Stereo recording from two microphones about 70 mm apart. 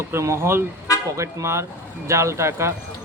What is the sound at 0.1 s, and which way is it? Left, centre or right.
Speech, right.